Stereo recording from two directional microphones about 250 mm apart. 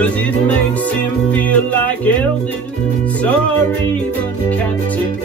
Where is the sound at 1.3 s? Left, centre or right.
Centre.